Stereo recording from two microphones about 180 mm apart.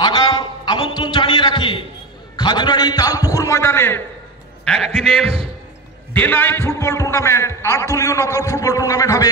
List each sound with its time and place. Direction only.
0.0 s a sound: 25° left (ahead or behind)
2.3 s a man's voice: 25° left (ahead or behind)
4.6 s a man's voice: centre (ahead or behind)
6.1 s a man's voice: 10° left (ahead or behind)